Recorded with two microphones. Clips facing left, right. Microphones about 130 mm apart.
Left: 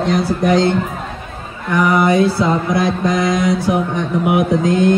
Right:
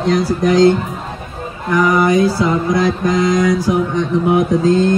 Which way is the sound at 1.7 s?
25° left (ahead or behind).